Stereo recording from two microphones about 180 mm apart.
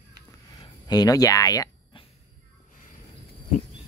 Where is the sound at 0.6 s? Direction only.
20° left (ahead or behind).